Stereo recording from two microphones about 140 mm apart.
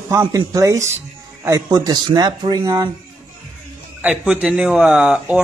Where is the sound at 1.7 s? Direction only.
30° right (ahead or behind).